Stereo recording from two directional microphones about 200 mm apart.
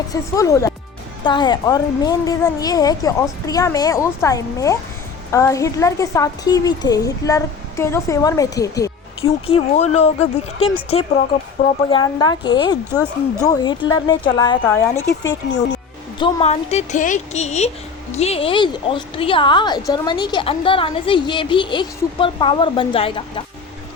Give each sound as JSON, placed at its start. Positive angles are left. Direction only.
{"t": 0.1, "sound": "a woman's voice", "side_deg": 15}
{"t": 9.2, "sound": "a woman's voice", "side_deg": 30}
{"t": 14.6, "sound": "a woman's voice", "side_deg": 10}
{"t": 16.1, "sound": "a woman's voice", "side_deg": 30}